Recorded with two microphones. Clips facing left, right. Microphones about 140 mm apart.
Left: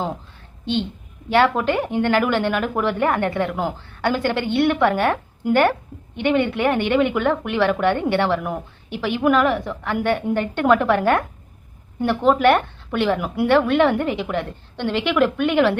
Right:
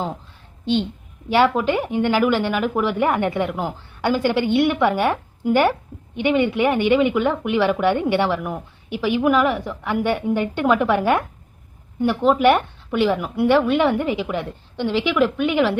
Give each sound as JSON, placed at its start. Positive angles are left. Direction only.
{"t": 0.6, "sound": "a woman's voice", "side_deg": -45}
{"t": 1.3, "sound": "a woman's voice", "side_deg": -10}
{"t": 3.5, "sound": "a woman's voice", "side_deg": 0}